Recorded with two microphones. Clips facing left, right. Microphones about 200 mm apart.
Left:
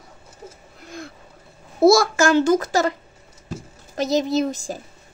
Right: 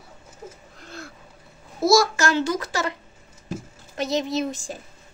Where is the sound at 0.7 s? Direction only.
10° left (ahead or behind).